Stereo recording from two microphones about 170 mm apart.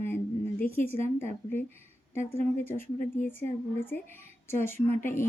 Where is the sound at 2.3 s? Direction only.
15° left (ahead or behind).